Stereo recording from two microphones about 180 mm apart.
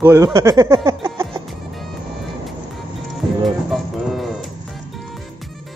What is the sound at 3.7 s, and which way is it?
Music, centre (ahead or behind).